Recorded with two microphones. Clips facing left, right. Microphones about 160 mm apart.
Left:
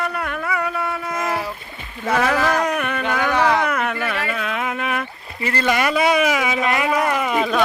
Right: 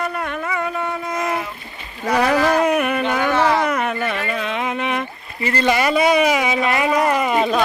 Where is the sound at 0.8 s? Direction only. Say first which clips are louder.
Right 1 dB; 15° right (ahead or behind).